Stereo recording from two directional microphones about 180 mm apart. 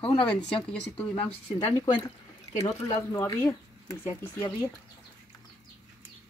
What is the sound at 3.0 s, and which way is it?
Speech, 15° left (ahead or behind).